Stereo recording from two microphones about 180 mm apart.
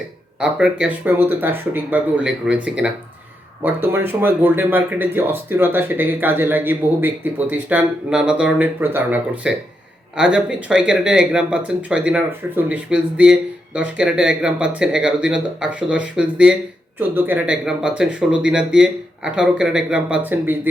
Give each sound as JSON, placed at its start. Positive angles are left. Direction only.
{"t": 0.3, "sound": "speech", "side_deg": -5}